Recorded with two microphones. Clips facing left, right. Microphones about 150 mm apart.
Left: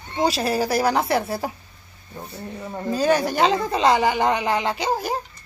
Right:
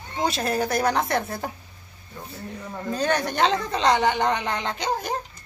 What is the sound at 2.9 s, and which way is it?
A woman's voice, 5° left (ahead or behind).